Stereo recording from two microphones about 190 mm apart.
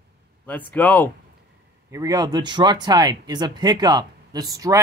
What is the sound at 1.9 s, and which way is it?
Speech, 15° right (ahead or behind).